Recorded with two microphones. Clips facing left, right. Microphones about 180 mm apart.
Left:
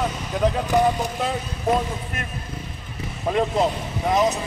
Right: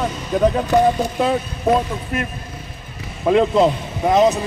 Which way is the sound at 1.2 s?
60° right (ahead or behind).